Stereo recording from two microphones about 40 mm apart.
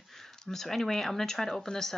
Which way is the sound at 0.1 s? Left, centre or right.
Centre.